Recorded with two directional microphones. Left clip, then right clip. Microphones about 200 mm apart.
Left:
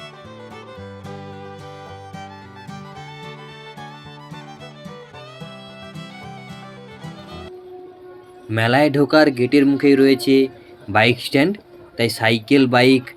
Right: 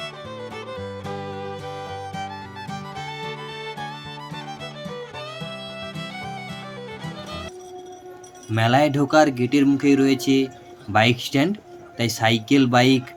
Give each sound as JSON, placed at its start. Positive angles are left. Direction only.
{"t": 0.5, "sound": "music", "side_deg": 0}
{"t": 4.6, "sound": "music", "side_deg": 0}
{"t": 8.4, "sound": "speech", "side_deg": 15}